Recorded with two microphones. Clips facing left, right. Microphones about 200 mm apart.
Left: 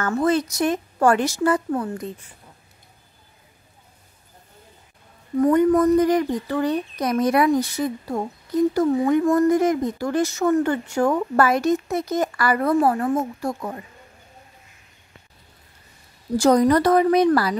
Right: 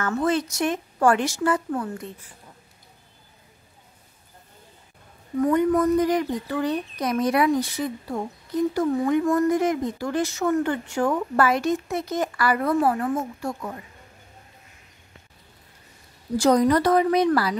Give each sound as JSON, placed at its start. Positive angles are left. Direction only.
{"t": 0.0, "sound": "speech", "side_deg": 40}
{"t": 5.4, "sound": "speech", "side_deg": 45}
{"t": 16.3, "sound": "speech", "side_deg": 45}